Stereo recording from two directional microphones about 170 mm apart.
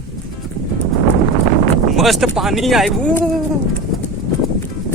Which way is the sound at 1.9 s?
Centre (ahead or behind).